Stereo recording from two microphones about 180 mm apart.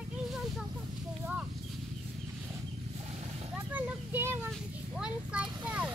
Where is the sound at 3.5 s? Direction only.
10° right (ahead or behind).